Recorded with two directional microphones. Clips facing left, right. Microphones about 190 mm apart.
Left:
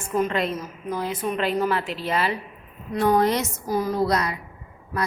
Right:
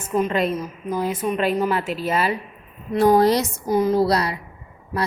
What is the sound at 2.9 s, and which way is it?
Speech, 35° right (ahead or behind).